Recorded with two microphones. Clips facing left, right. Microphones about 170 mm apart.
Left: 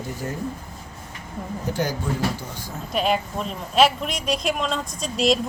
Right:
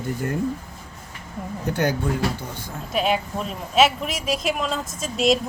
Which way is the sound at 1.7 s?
60° right (ahead or behind).